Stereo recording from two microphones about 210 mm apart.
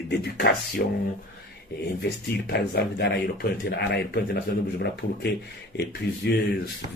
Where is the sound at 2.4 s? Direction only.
50° left (ahead or behind).